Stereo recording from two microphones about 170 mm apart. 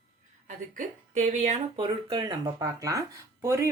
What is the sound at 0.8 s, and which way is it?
Speech, 45° right (ahead or behind).